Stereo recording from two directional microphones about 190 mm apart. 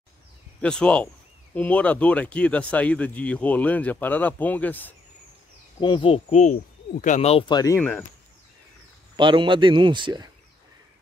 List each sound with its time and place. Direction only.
0.6 s speech: 5° left (ahead or behind)
5.8 s speech: 25° left (ahead or behind)
9.1 s a man's voice: 25° right (ahead or behind)